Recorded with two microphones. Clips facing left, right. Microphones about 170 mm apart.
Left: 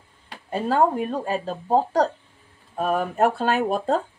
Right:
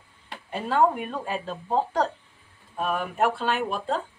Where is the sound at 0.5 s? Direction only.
35° left (ahead or behind).